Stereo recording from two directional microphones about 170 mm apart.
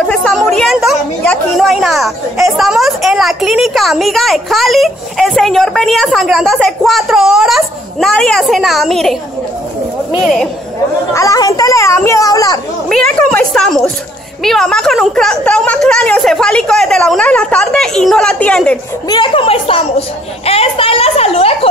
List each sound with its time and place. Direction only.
0.0 s a woman's voice: 5° left (ahead or behind)
10.2 s a woman's voice: 5° left (ahead or behind)
11.1 s a child's voice: 20° left (ahead or behind)
12.8 s a woman's voice: 5° left (ahead or behind)
19.0 s a child's voice: 30° left (ahead or behind)